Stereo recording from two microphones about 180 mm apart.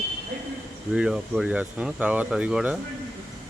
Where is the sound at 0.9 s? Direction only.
5° right (ahead or behind).